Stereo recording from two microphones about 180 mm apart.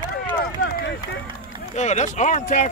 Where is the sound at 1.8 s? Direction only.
40° left (ahead or behind).